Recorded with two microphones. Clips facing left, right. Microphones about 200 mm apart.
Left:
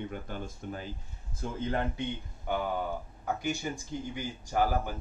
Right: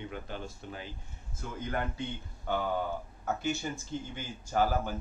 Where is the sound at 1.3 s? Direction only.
30° left (ahead or behind).